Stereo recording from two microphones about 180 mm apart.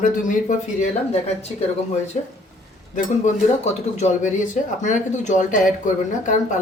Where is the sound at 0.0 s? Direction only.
45° left (ahead or behind).